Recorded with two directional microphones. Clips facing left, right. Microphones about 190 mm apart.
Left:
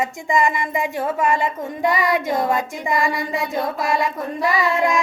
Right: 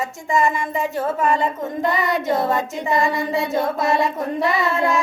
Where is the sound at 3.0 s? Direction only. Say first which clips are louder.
Right 4 dB; 15° left (ahead or behind).